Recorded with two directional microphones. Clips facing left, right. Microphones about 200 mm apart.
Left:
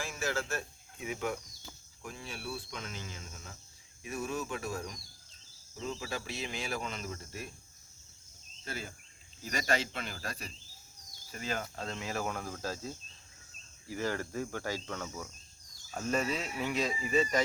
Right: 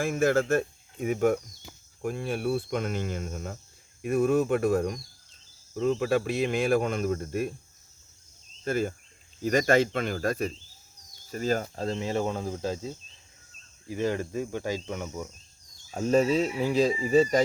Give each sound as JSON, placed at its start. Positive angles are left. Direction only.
{"t": 0.0, "sound": "speech", "side_deg": -55}
{"t": 2.0, "sound": "cricket", "side_deg": -55}
{"t": 8.6, "sound": "speech", "side_deg": -50}
{"t": 11.3, "sound": "cricket", "side_deg": -40}
{"t": 15.9, "sound": "speech", "side_deg": -30}